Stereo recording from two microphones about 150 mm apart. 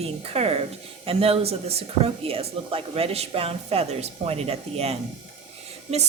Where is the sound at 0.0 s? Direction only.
40° right (ahead or behind).